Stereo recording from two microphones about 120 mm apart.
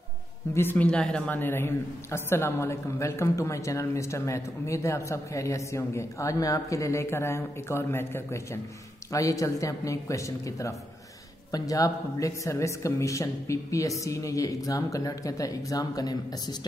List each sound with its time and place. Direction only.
0.6 s a man's voice: 15° left (ahead or behind); by 16.5 s 35° left (ahead or behind)